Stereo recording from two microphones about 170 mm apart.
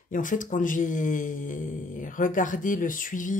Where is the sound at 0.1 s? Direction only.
50° left (ahead or behind).